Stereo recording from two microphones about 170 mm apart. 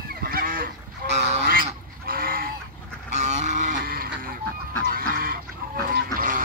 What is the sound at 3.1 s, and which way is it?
Goose, 45° right (ahead or behind).